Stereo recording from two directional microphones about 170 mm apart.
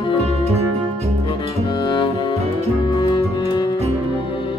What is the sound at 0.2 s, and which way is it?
Music, 35° right (ahead or behind).